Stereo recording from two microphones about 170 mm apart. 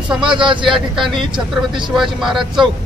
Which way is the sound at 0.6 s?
Centre (ahead or behind).